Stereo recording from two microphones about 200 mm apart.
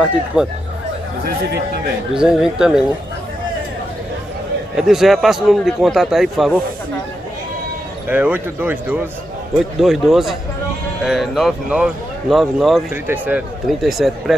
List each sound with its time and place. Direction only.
0.3 s a man's voice: 5° right (ahead or behind)
2.1 s a man's voice: 5° right (ahead or behind)
4.7 s a man's voice: centre (ahead or behind)
8.1 s a man's voice: 10° right (ahead or behind)